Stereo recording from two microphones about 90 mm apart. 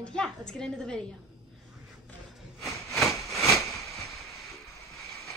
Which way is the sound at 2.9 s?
Centre (ahead or behind).